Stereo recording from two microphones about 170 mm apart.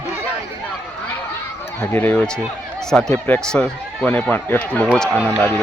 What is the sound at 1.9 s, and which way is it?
Speech, 10° left (ahead or behind).